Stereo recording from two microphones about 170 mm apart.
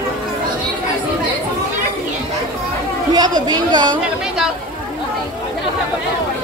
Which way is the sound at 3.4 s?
25° right (ahead or behind).